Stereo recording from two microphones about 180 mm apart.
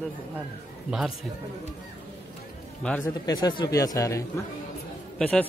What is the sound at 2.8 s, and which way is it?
Speech, 5° left (ahead or behind).